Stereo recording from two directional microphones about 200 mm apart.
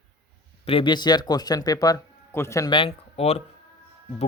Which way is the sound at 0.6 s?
25° left (ahead or behind).